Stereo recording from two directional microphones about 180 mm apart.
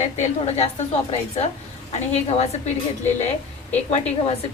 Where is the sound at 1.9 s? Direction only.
35° left (ahead or behind).